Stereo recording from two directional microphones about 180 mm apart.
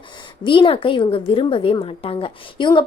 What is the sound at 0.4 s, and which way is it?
A woman's voice, 30° left (ahead or behind).